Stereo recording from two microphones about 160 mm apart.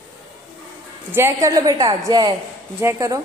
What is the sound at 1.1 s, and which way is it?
A woman's voice, 15° right (ahead or behind).